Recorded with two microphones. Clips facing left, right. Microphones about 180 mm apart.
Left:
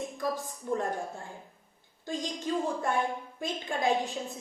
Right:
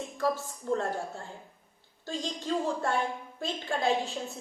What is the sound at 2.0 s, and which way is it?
A woman's voice, 15° left (ahead or behind).